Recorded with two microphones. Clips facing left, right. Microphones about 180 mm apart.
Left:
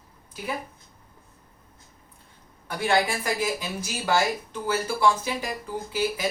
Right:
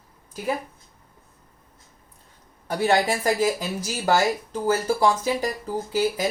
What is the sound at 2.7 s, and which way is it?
Speech, 40° right (ahead or behind).